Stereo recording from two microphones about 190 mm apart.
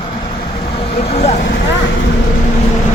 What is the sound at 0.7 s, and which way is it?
Vehicle, 30° left (ahead or behind).